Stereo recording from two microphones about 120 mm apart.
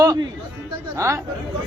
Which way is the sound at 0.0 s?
30° right (ahead or behind).